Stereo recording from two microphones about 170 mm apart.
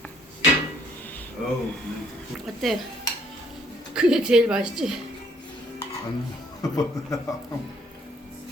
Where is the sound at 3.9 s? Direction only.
5° right (ahead or behind).